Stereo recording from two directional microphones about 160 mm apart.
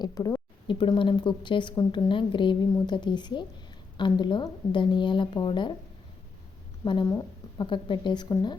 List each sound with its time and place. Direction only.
0.0 s a woman's voice: 25° left (ahead or behind)
6.8 s a woman's voice: 30° left (ahead or behind)